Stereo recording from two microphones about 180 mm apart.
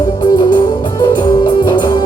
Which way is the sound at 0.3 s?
25° left (ahead or behind).